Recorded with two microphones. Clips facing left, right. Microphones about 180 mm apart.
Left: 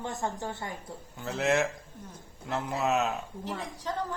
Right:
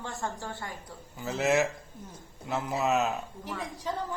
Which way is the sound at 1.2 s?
5° right (ahead or behind).